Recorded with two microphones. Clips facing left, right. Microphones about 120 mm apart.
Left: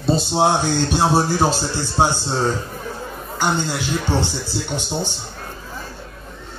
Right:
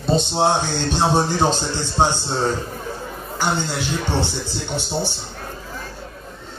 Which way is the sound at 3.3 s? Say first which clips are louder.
Left 1 dB; 15° left (ahead or behind).